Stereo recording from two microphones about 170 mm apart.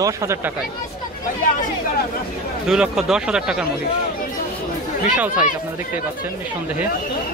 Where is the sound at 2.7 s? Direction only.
5° right (ahead or behind).